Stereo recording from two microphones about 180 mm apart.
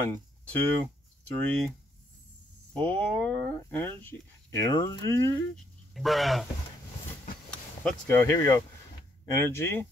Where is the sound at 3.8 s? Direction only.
10° left (ahead or behind).